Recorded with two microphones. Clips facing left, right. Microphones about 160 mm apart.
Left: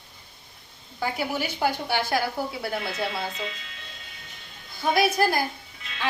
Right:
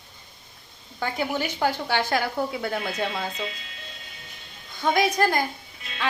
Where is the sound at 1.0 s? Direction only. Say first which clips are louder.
Right 1 dB; 10° left (ahead or behind).